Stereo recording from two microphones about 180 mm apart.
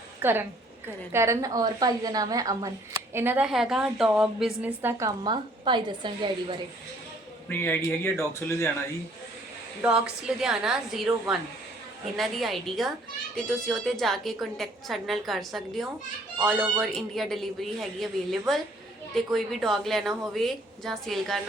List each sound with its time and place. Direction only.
0.2 s a woman's voice: 10° right (ahead or behind)
7.4 s a man's voice: 10° left (ahead or behind)
9.8 s a woman's voice: 5° right (ahead or behind)